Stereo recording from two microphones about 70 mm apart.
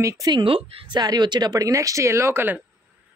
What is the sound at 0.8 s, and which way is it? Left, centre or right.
Speech, right.